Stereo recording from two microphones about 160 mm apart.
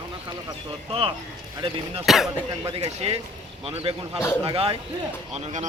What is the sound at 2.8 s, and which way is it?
Speech, 40° right (ahead or behind).